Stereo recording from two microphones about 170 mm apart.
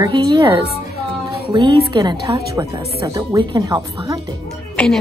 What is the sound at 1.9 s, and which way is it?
Speech, 25° right (ahead or behind).